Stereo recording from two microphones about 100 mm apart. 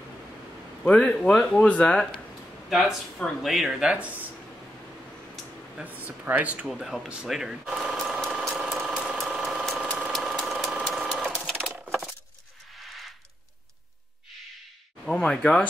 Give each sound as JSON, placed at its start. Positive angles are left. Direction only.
{"t": 0.8, "sound": "speech", "side_deg": 15}
{"t": 2.7, "sound": "speech", "side_deg": 0}
{"t": 5.9, "sound": "speech", "side_deg": -15}
{"t": 6.7, "sound": "a sound", "side_deg": 0}
{"t": 9.8, "sound": "engine", "side_deg": -10}
{"t": 10.1, "sound": "sewing machine", "side_deg": 0}
{"t": 12.7, "sound": "a sound", "side_deg": 0}
{"t": 15.0, "sound": "speech", "side_deg": 5}